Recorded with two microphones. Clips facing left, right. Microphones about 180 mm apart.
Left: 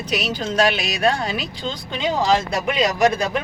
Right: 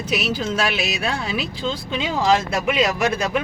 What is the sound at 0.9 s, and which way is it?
Speech, 45° left (ahead or behind).